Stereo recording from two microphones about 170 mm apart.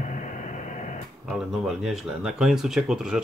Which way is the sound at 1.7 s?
Centre (ahead or behind).